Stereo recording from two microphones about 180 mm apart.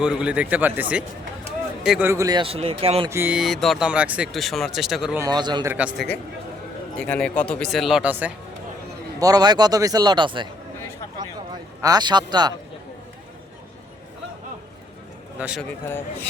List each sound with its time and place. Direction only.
0.0 s a man's voice: 5° right (ahead or behind)
2.0 s speech: 20° right (ahead or behind)
3.1 s speech: 10° right (ahead or behind)
5.2 s speech: 25° right (ahead or behind)
5.7 s a man's voice: 5° right (ahead or behind)
6.9 s speech: 5° left (ahead or behind)
9.2 s speech: 20° right (ahead or behind)
15.4 s speech: 5° right (ahead or behind)